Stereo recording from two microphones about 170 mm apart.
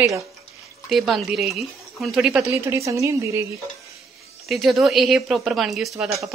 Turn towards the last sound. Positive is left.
turn(degrees=0)  # may be behind; listen again after turning